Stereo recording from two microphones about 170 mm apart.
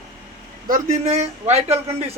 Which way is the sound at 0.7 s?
40° right (ahead or behind).